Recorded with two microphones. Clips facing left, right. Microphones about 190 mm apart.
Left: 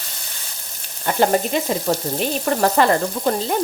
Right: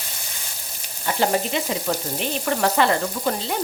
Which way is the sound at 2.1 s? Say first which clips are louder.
Left 4 dB; 40° left (ahead or behind).